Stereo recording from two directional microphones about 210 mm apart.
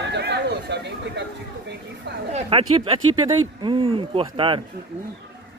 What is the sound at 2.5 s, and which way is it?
Speech, 25° right (ahead or behind).